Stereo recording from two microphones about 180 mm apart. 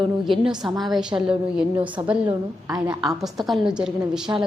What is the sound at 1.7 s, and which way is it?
A woman's voice, 25° right (ahead or behind).